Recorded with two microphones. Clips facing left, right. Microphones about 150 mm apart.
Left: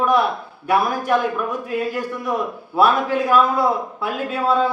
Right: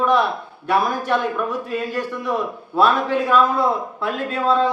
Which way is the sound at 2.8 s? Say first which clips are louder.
Even; 10° left (ahead or behind).